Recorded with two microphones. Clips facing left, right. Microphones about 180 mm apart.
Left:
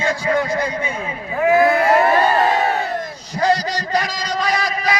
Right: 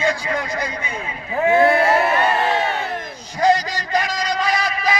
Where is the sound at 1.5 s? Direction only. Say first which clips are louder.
Left 1 dB; 25° right (ahead or behind).